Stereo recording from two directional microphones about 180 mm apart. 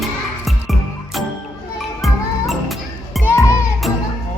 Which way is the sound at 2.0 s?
Centre (ahead or behind).